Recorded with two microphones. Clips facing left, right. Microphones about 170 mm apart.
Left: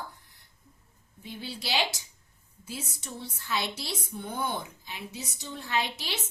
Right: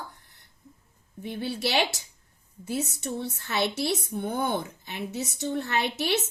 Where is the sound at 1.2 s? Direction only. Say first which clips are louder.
Right 8 dB; 60° right (ahead or behind).